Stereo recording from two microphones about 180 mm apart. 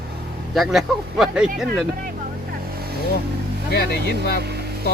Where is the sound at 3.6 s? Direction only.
65° left (ahead or behind).